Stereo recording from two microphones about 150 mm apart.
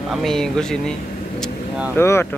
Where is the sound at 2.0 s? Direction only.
15° left (ahead or behind).